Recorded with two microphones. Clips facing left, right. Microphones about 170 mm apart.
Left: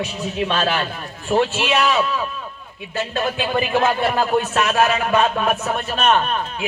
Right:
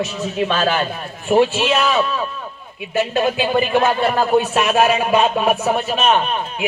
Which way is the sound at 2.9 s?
20° right (ahead or behind).